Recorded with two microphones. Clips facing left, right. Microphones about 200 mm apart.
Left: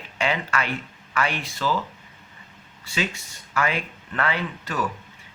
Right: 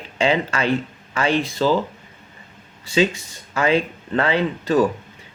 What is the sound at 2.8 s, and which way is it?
Speech, 20° right (ahead or behind).